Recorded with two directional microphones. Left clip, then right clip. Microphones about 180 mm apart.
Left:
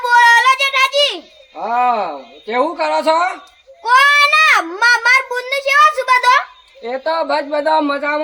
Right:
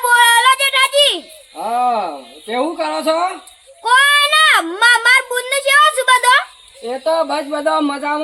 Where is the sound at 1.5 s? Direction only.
15° left (ahead or behind).